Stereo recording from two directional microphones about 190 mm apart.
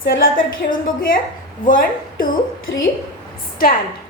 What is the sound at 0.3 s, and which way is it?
Speech, 45° left (ahead or behind).